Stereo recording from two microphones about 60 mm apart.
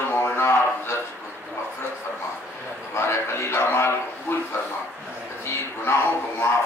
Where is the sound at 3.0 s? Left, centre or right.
Left.